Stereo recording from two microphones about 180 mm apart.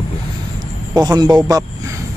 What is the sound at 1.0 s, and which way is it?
Speech, 20° right (ahead or behind).